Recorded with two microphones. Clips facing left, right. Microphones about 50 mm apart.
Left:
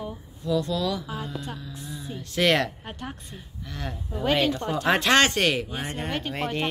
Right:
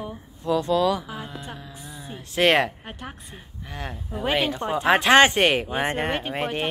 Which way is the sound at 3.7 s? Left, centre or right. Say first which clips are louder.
Right 1 dB; centre.